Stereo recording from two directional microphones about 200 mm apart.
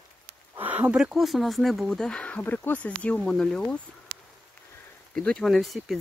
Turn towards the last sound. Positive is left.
turn(degrees=0)  # may be behind; listen again after turning